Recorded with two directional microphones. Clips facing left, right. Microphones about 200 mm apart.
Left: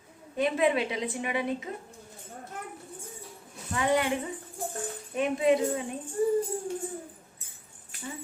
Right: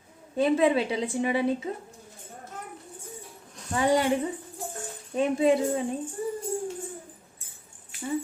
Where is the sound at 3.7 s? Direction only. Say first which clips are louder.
Right 3 dB; 30° right (ahead or behind).